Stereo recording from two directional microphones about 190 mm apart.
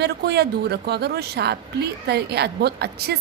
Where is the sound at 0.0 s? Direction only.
60° right (ahead or behind).